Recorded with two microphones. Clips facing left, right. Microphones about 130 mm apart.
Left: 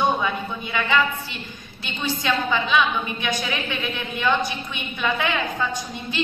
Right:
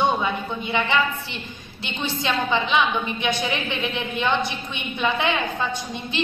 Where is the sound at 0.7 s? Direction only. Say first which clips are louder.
Left 1 dB; 25° right (ahead or behind).